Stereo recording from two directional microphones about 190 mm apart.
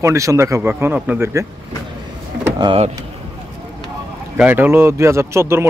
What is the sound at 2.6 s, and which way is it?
Speech, 25° right (ahead or behind).